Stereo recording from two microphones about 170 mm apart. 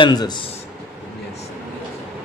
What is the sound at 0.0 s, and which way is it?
Speech, 25° left (ahead or behind).